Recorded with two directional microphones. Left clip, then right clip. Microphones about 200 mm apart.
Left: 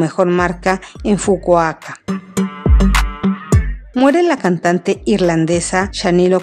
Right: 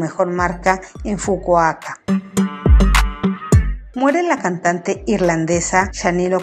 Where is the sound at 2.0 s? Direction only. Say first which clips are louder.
Even; centre (ahead or behind).